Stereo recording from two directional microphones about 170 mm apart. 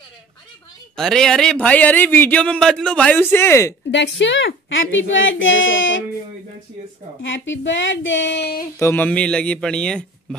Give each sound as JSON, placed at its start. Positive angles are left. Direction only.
{"t": 0.9, "sound": "a man's voice", "side_deg": 5}
{"t": 3.9, "sound": "speech", "side_deg": 90}
{"t": 7.2, "sound": "speech", "side_deg": 90}
{"t": 8.7, "sound": "speech", "side_deg": 15}